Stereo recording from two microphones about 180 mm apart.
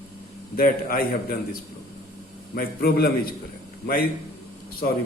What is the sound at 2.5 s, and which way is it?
A man's voice, 55° left (ahead or behind).